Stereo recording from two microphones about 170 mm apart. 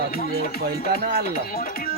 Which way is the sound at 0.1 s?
60° left (ahead or behind).